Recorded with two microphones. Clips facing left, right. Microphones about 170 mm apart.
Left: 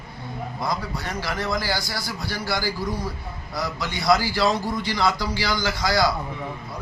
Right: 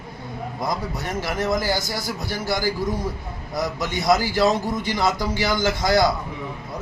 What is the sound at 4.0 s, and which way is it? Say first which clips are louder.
Speech: right 1 dB; 20° right (ahead or behind).